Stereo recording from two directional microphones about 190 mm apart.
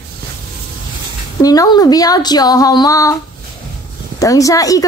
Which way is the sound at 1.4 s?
20° left (ahead or behind).